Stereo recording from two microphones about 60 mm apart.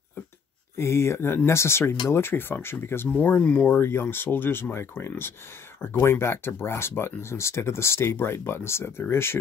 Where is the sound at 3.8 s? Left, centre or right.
Left.